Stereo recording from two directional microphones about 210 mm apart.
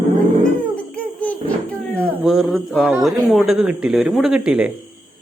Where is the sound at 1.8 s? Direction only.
5° left (ahead or behind).